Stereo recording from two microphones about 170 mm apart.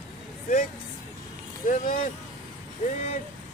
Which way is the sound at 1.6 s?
55° left (ahead or behind).